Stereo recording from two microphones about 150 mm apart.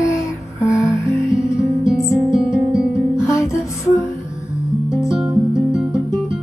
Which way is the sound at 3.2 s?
20° left (ahead or behind).